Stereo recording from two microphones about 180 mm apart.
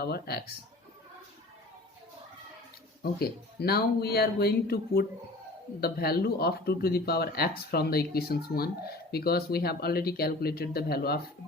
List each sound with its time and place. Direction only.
0.0 s speech: 60° left (ahead or behind)
3.0 s speech: 60° left (ahead or behind)